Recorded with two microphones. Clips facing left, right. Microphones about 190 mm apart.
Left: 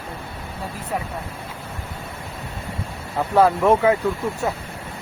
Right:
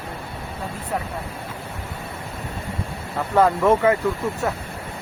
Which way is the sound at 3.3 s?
10° left (ahead or behind).